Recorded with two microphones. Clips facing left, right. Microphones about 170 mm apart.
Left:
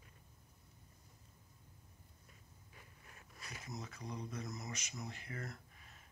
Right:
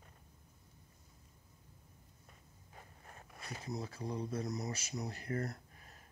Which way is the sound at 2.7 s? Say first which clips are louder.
Right 6 dB; 45° right (ahead or behind).